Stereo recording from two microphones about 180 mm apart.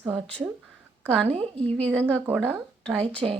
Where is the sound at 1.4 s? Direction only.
5° left (ahead or behind).